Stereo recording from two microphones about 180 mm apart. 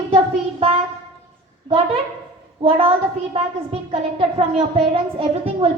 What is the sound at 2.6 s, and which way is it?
A woman's voice, 30° right (ahead or behind).